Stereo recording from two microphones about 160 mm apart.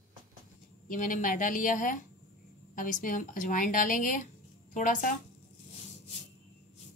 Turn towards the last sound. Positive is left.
turn(degrees=55)  # may be behind; listen again after turning